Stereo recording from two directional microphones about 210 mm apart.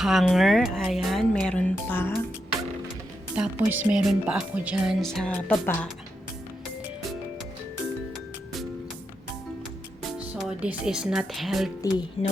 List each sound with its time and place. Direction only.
0.0 s speech: centre (ahead or behind)
3.6 s speech: 10° right (ahead or behind)
10.1 s speech: centre (ahead or behind)
11.8 s speech: 20° left (ahead or behind)